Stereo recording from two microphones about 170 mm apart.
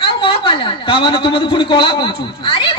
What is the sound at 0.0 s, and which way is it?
A woman's voice, 30° left (ahead or behind).